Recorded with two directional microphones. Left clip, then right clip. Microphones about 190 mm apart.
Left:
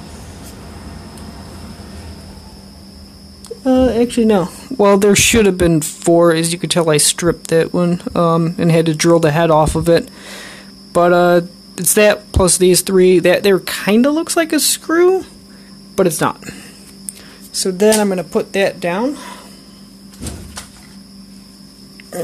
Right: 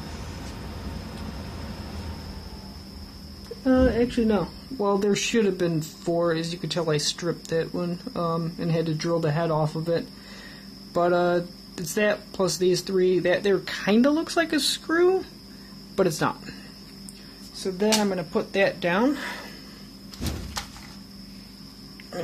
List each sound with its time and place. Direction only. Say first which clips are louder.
3.6 s a woman's voice: left 8 dB; 55° left (ahead or behind); by 16.5 s 35° left (ahead or behind)
17.6 s a woman's voice: left 11 dB; 55° left (ahead or behind)
19.0 s speech: left 4 dB; 10° right (ahead or behind)